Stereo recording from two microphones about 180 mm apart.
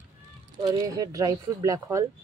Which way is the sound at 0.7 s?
20° right (ahead or behind).